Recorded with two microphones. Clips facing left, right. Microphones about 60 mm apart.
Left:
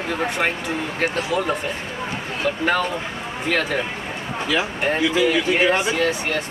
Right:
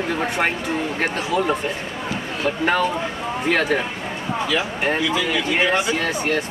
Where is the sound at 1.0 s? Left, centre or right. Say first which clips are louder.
Left 1 dB; centre.